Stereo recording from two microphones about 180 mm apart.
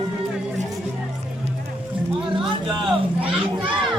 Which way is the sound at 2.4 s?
Centre (ahead or behind).